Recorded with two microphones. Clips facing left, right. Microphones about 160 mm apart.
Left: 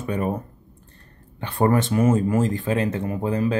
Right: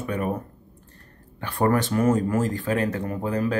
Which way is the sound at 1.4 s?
25° left (ahead or behind).